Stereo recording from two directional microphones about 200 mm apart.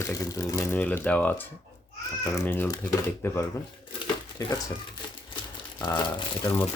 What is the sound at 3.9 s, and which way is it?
Crumpling, 20° left (ahead or behind).